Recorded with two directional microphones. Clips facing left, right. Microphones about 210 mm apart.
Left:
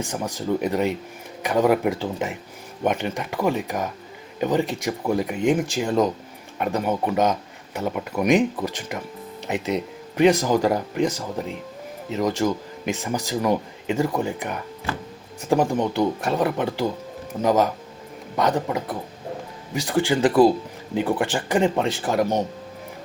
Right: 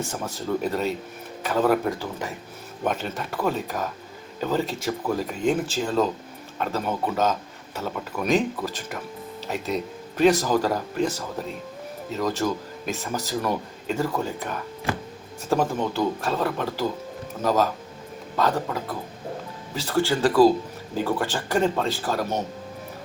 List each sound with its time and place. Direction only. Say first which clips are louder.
0.0 s speech: left 3 dB; 15° left (ahead or behind)